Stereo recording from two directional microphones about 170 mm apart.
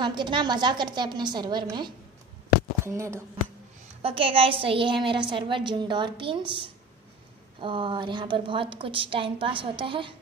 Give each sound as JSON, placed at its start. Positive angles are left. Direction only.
{"t": 0.0, "sound": "a woman's voice", "side_deg": -25}
{"t": 4.0, "sound": "a woman's voice", "side_deg": -35}
{"t": 7.6, "sound": "a woman's voice", "side_deg": -30}